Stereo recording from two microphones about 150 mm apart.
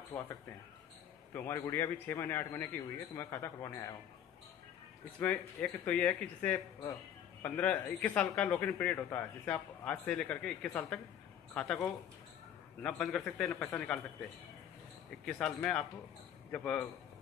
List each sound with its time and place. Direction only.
1.3 s speech: 15° left (ahead or behind)
5.2 s a man's voice: 5° left (ahead or behind)
15.2 s a man's voice: 5° left (ahead or behind)